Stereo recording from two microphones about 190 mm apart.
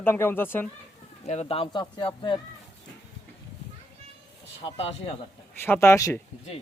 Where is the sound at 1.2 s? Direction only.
35° left (ahead or behind).